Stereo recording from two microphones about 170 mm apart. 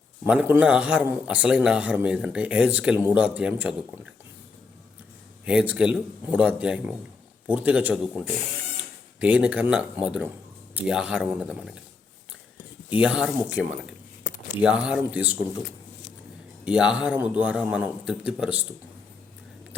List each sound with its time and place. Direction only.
0.3 s speech: 10° right (ahead or behind)
5.5 s speech: 5° right (ahead or behind)
9.2 s speech: 10° right (ahead or behind)
13.0 s speech: 5° right (ahead or behind)
14.3 s a sound: 50° left (ahead or behind)
14.6 s speech: 5° right (ahead or behind)
16.6 s speech: 5° right (ahead or behind)